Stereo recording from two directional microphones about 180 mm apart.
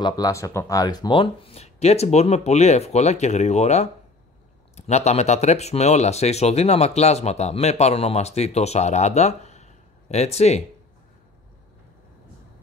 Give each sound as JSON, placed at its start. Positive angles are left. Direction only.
{"t": 0.0, "sound": "speech", "side_deg": 20}